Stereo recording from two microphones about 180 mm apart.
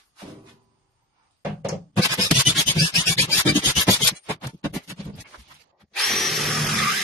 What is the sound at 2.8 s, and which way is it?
Rub, 15° left (ahead or behind).